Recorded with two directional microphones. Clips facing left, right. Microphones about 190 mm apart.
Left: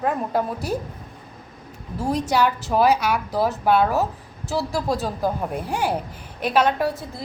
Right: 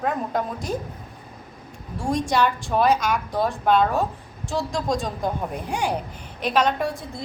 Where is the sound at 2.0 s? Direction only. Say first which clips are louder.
Left 1 dB; 5° left (ahead or behind).